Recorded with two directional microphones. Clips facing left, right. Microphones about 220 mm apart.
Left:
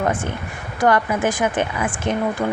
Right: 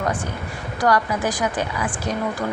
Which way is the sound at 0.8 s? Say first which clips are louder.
Left 2 dB; 25° left (ahead or behind).